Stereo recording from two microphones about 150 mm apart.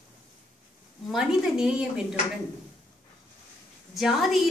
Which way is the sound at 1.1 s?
5° right (ahead or behind).